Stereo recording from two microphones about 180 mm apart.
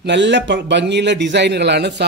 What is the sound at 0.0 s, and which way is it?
A man's voice, 80° right.